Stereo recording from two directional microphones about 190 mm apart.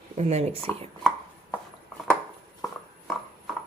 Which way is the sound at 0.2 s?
35° right (ahead or behind).